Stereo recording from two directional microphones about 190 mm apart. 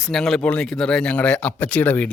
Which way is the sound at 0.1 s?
Centre (ahead or behind).